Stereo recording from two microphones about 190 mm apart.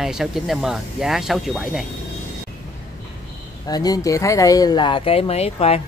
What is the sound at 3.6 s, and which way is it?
Speech, 20° left (ahead or behind).